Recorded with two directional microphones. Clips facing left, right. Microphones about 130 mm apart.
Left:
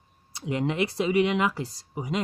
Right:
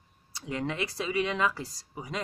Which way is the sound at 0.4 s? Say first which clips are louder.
Left 6 dB; 20° left (ahead or behind).